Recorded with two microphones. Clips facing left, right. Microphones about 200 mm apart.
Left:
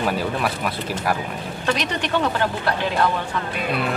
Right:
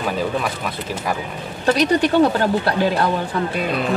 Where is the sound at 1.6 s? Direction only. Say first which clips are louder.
Right 8 dB; 35° right (ahead or behind).